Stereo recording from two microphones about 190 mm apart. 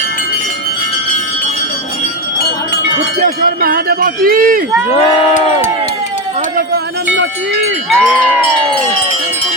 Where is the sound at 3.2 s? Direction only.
50° right (ahead or behind).